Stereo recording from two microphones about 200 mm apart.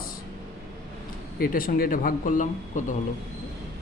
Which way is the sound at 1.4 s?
45° left (ahead or behind).